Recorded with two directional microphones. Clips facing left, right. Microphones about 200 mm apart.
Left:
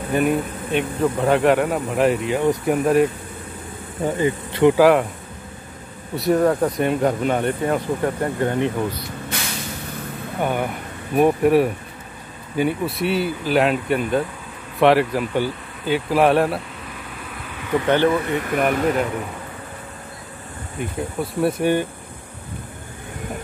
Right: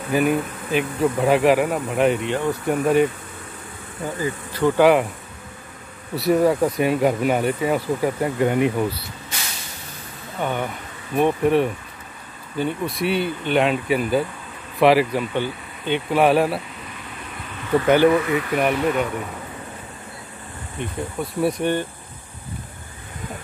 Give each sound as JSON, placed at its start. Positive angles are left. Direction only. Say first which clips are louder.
{"t": 0.1, "sound": "speech", "louder": "even", "side_deg": 0}
{"t": 4.0, "sound": "bee", "louder": "left 5 dB", "side_deg": 25}
{"t": 4.7, "sound": "speech", "louder": "right 2 dB", "side_deg": 0}
{"t": 6.1, "sound": "speech", "louder": "even", "side_deg": 0}
{"t": 10.4, "sound": "speech", "louder": "left 2 dB", "side_deg": 10}
{"t": 17.8, "sound": "speech", "louder": "right 2 dB", "side_deg": -10}
{"t": 18.2, "sound": "speech", "louder": "right 1 dB", "side_deg": 45}
{"t": 18.6, "sound": "speech", "louder": "left 2 dB", "side_deg": 0}
{"t": 20.8, "sound": "speech", "louder": "left 2 dB", "side_deg": 5}